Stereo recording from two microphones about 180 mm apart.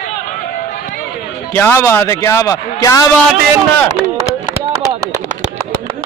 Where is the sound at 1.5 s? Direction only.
10° left (ahead or behind).